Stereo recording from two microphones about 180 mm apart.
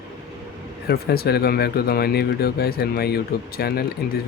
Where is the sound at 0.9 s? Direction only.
60° left (ahead or behind).